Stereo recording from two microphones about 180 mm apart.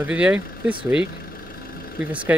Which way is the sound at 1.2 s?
55° left (ahead or behind).